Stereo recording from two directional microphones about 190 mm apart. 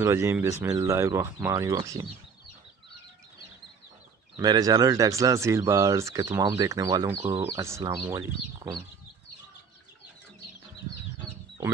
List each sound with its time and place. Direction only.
0.0 s speech: 15° right (ahead or behind)
4.4 s speech: 20° right (ahead or behind)